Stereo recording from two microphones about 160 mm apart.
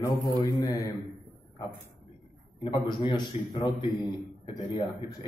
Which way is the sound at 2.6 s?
30° left (ahead or behind).